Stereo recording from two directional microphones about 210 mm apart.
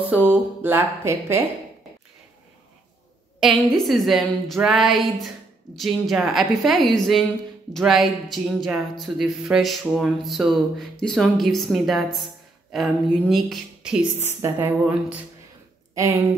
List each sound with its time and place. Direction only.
0.0 s speech: 10° right (ahead or behind)
3.3 s speech: centre (ahead or behind)